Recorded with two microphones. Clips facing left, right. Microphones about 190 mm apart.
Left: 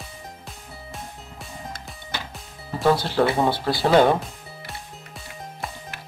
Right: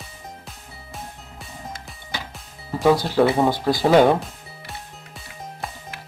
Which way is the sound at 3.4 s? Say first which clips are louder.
Right 3 dB; 15° right (ahead or behind).